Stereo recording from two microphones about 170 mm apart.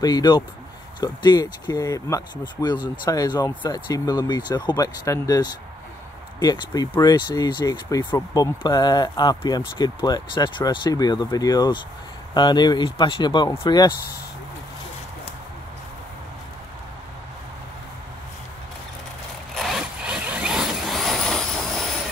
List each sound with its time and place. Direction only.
0.0 s speech: 25° left (ahead or behind)
19.5 s zipper: centre (ahead or behind)